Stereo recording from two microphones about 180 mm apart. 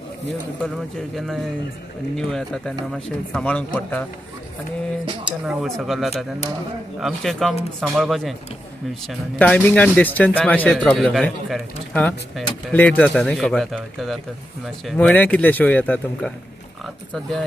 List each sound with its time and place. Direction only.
0.6 s speech: centre (ahead or behind)
5.2 s speech: 5° right (ahead or behind)